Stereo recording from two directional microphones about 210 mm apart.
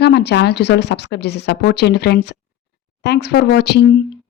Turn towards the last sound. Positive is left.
turn(degrees=55)  # may be behind; listen again after turning